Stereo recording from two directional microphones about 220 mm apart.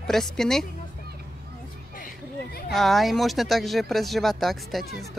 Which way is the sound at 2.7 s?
Centre (ahead or behind).